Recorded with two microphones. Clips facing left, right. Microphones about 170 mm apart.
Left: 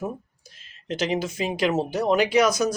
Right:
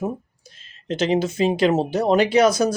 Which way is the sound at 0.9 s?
25° right (ahead or behind).